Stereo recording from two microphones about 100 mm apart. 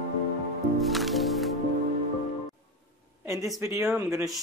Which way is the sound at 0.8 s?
Centre (ahead or behind).